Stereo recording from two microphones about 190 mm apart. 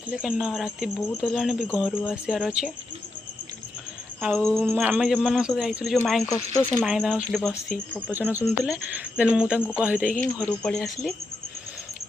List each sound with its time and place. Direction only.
0.1 s speech: 5° right (ahead or behind)
4.2 s speech: centre (ahead or behind)
4.6 s speech: 10° right (ahead or behind)
6.2 s speech: 20° left (ahead or behind)
6.8 s speech: 5° right (ahead or behind)
10.4 s speech: 5° left (ahead or behind)